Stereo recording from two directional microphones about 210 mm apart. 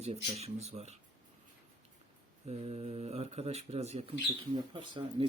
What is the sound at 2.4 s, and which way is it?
Speech, 30° right (ahead or behind).